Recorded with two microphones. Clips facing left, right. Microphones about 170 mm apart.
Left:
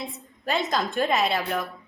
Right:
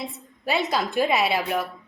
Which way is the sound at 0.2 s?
Centre (ahead or behind).